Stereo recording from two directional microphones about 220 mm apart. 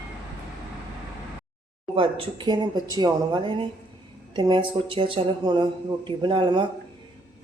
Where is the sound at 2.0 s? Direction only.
20° right (ahead or behind).